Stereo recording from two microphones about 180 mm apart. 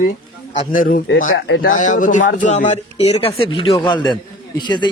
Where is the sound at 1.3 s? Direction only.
70° left (ahead or behind).